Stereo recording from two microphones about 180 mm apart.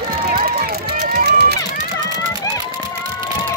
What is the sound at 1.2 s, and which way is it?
Run, 65° right (ahead or behind).